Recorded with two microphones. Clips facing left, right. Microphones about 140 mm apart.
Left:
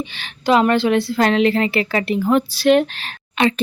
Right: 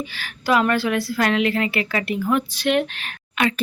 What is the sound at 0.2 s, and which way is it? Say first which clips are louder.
Speech: left 4 dB; 20° left (ahead or behind).